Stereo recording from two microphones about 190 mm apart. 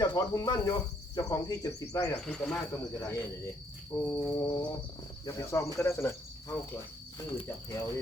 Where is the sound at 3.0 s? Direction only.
15° left (ahead or behind).